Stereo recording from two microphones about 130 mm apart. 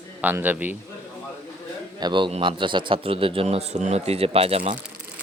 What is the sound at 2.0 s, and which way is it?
Speech, 35° right (ahead or behind).